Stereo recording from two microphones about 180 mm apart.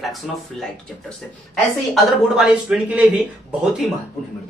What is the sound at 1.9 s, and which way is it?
Speech, 5° right (ahead or behind).